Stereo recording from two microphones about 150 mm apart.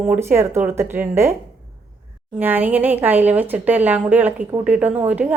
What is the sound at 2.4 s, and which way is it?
A woman's voice, 10° right (ahead or behind).